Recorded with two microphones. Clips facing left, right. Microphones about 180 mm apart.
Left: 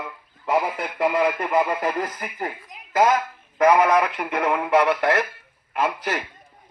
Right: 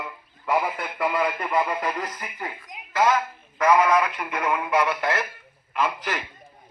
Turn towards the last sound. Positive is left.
turn(degrees=50)  # may be behind; listen again after turning